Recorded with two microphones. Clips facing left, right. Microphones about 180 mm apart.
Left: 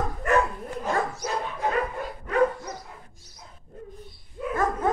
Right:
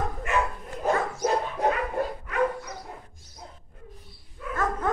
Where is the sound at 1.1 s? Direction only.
50° right (ahead or behind).